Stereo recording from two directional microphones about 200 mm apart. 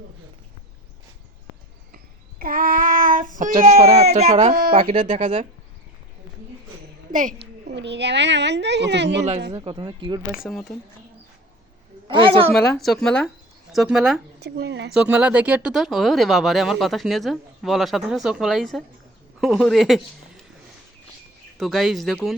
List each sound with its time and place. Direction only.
2.4 s child singing: 45° right (ahead or behind)
4.1 s speech: 35° right (ahead or behind)
7.1 s music: 40° right (ahead or behind)
7.7 s a woman's voice: 60° right (ahead or behind)
9.5 s speech: 25° right (ahead or behind)
10.3 s speech: centre (ahead or behind)
12.0 s a man's voice: 25° right (ahead or behind)
12.5 s speech: 5° left (ahead or behind)
14.3 s a woman's voice: 55° right (ahead or behind)
14.9 s a man's voice: 5° right (ahead or behind)
21.6 s speech: centre (ahead or behind)